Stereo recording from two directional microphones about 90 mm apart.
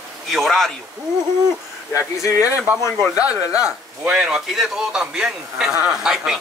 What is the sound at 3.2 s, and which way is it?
A man's voice, 15° right (ahead or behind).